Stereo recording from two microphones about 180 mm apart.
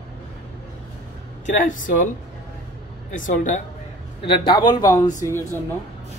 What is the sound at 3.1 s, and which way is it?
Speech, 45° left (ahead or behind).